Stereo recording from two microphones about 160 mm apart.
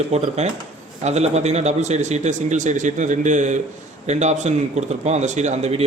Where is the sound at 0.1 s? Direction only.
45° right (ahead or behind).